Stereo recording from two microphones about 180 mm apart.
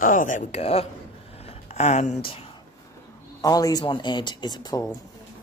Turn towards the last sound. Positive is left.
turn(degrees=20)  # may be behind; listen again after turning